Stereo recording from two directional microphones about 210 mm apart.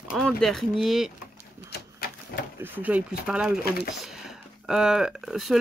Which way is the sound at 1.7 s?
50° left (ahead or behind).